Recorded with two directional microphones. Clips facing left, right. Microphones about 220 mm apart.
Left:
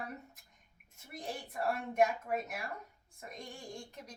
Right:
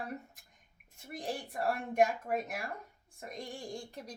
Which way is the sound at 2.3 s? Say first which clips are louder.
Right 2 dB; 30° right (ahead or behind).